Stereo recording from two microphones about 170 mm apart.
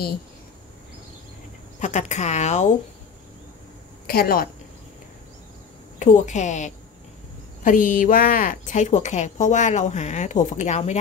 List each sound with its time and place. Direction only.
1.8 s a woman's voice: 45° left (ahead or behind)
4.1 s a woman's voice: 60° left (ahead or behind)
5.9 s a woman's voice: 45° left (ahead or behind)